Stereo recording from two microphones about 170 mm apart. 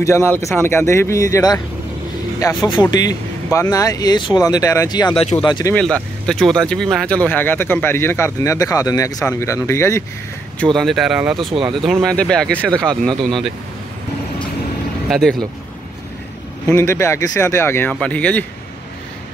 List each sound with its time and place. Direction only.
0.0 s speech: 15° left (ahead or behind)
6.2 s speech: 5° left (ahead or behind)
10.6 s speech: centre (ahead or behind)
15.0 s speech: centre (ahead or behind)
16.6 s speech: 15° left (ahead or behind)